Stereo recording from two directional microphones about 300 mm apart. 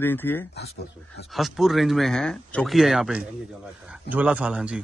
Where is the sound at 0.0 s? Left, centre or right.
Centre.